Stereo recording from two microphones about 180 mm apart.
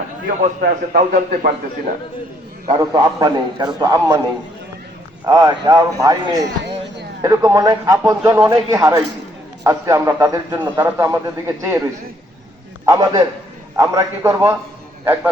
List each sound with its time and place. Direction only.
0.3 s a man's voice: 50° right (ahead or behind)
2.6 s a man's voice: 25° right (ahead or behind)
5.2 s a man's voice: 20° right (ahead or behind)
12.8 s a man's voice: 20° right (ahead or behind)